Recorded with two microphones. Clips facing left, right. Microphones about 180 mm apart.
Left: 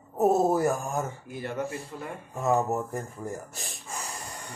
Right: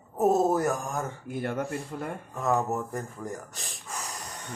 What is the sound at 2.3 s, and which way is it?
Speech, 15° left (ahead or behind).